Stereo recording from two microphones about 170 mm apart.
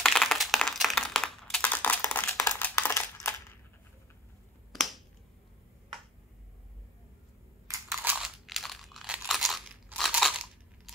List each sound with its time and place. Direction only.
0.0 s computer keyboard: centre (ahead or behind)
2.3 s a sound: 15° left (ahead or behind)
4.7 s finger snapping: centre (ahead or behind)
7.9 s crunch: 5° right (ahead or behind)